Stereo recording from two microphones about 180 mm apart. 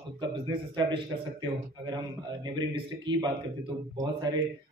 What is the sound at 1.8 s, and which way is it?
Speech, 25° right (ahead or behind).